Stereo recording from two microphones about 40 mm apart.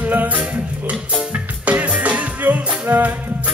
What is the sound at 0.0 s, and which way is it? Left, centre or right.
Music, right.